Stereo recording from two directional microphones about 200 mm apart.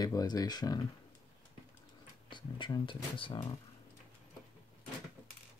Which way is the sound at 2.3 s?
25° left (ahead or behind).